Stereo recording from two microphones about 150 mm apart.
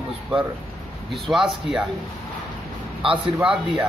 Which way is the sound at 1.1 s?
Centre (ahead or behind).